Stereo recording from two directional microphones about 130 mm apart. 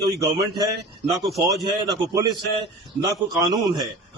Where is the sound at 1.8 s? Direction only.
25° right (ahead or behind).